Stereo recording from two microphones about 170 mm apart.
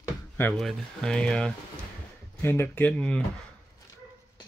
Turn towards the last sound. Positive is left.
turn(degrees=5)  # may be behind; listen again after turning